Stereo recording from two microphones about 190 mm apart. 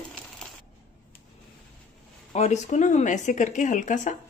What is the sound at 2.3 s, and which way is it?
Speech, 35° left (ahead or behind).